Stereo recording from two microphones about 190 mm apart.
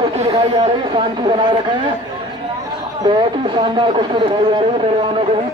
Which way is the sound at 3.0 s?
25° right (ahead or behind).